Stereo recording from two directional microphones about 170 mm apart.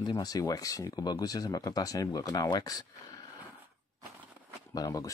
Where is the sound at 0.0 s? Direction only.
20° left (ahead or behind).